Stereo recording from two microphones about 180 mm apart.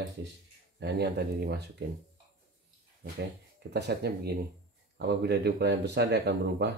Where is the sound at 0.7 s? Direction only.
70° right (ahead or behind).